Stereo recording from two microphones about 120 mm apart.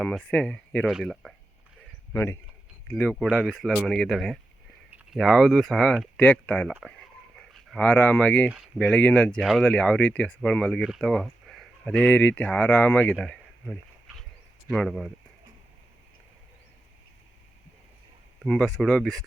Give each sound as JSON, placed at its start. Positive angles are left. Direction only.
{"t": 0.0, "sound": "speech", "side_deg": 5}
{"t": 0.9, "sound": "speech", "side_deg": -5}
{"t": 2.1, "sound": "speech", "side_deg": 25}
{"t": 2.8, "sound": "speech", "side_deg": 10}
{"t": 7.3, "sound": "a sound", "side_deg": 5}
{"t": 7.9, "sound": "speech", "side_deg": 15}
{"t": 8.4, "sound": "speech", "side_deg": -5}
{"t": 8.8, "sound": "speech", "side_deg": 10}
{"t": 9.4, "sound": "speech", "side_deg": 0}
{"t": 18.4, "sound": "speech", "side_deg": 5}